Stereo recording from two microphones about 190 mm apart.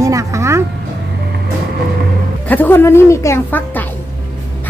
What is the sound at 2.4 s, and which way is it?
A woman's voice, 10° left (ahead or behind).